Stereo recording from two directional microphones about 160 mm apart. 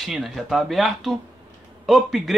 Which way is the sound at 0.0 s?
Centre (ahead or behind).